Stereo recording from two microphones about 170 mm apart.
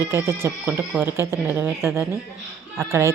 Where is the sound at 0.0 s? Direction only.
15° right (ahead or behind).